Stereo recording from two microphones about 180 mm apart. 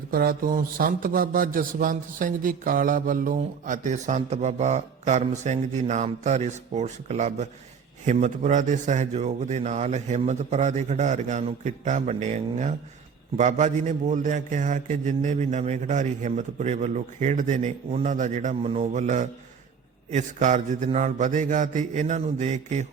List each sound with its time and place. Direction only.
0.1 s a man's voice: 55° right (ahead or behind)